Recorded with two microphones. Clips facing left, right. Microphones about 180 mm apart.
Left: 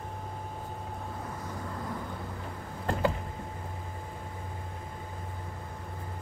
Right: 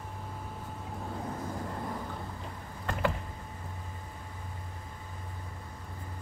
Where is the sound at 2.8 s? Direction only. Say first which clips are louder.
Left 3 dB; 30° left (ahead or behind).